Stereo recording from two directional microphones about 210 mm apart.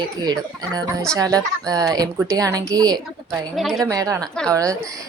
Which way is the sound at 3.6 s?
Centre (ahead or behind).